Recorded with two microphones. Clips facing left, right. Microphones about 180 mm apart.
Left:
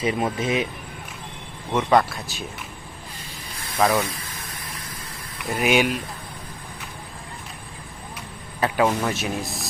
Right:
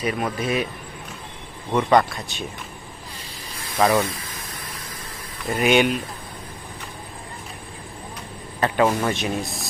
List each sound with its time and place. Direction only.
0.0 s speech: 25° left (ahead or behind)
1.7 s speech: 5° left (ahead or behind)
3.8 s speech: centre (ahead or behind)
5.5 s speech: 5° left (ahead or behind)
8.6 s a man's voice: 5° left (ahead or behind)